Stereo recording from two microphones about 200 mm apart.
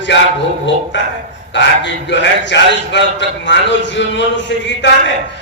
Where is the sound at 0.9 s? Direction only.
65° left (ahead or behind).